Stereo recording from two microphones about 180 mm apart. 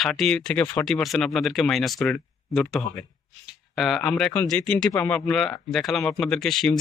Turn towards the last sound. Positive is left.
turn(degrees=0)  # may be behind; listen again after turning